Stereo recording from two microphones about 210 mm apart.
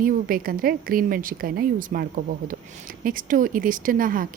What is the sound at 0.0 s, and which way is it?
A woman's voice, 40° right (ahead or behind).